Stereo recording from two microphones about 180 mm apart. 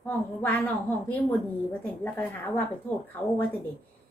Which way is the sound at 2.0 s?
10° left (ahead or behind).